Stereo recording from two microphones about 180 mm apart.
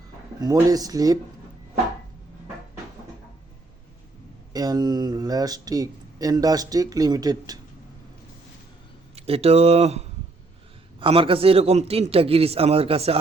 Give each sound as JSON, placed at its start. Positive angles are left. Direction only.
{"t": 0.4, "sound": "speech", "side_deg": -20}
{"t": 4.5, "sound": "speech", "side_deg": -20}
{"t": 9.1, "sound": "a man's voice", "side_deg": -35}